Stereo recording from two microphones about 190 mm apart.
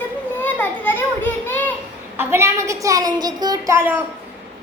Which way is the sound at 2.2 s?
15° right (ahead or behind).